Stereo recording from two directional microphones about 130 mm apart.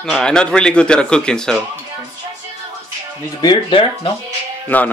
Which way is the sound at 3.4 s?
40° left (ahead or behind).